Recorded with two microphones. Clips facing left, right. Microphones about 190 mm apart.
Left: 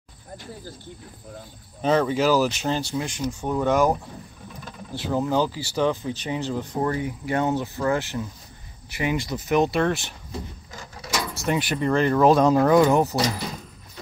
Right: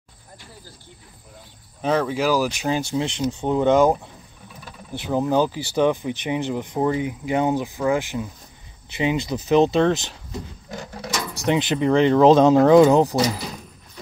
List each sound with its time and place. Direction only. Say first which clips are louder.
1.8 s speech: left 1 dB; 5° right (ahead or behind)
2.9 s speech: right 4 dB; 20° right (ahead or behind)
10.7 s a sound: right 7 dB; 60° right (ahead or behind)
11.5 s speech: right 4 dB; 20° right (ahead or behind)